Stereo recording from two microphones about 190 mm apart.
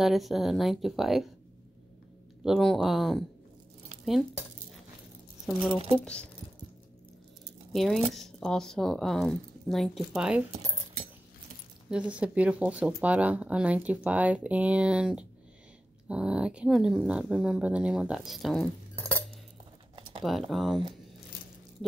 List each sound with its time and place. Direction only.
0.0 s speech: centre (ahead or behind)
2.4 s speech: centre (ahead or behind)
5.9 s speech: 5° left (ahead or behind)
7.7 s speech: centre (ahead or behind)
11.9 s speech: 5° right (ahead or behind); by 19.2 s 10° left (ahead or behind)
20.2 s speech: centre (ahead or behind)